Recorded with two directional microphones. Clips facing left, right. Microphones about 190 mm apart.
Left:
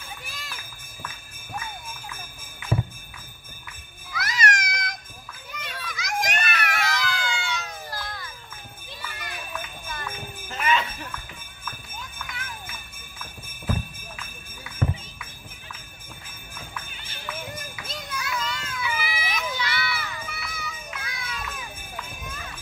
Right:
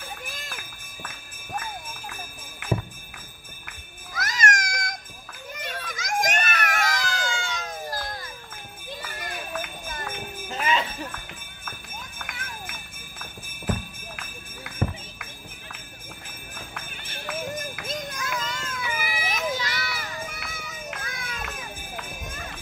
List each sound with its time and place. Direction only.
0.3 s run: 50° right (ahead or behind)
4.1 s a sound: 45° right (ahead or behind)
5.5 s children playing: 50° right (ahead or behind)
9.0 s run: 45° right (ahead or behind)
10.5 s jingle bell: 30° right (ahead or behind)
12.2 s run: 50° right (ahead or behind)
16.7 s music: 55° right (ahead or behind)
17.7 s children playing: 50° right (ahead or behind)